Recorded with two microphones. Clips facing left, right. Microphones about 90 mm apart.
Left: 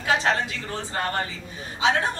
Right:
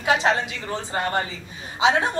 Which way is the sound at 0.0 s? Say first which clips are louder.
Right 3 dB; 15° right (ahead or behind).